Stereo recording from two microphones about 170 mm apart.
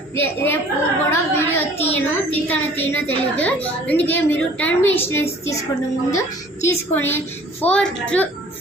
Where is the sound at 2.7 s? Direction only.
10° left (ahead or behind).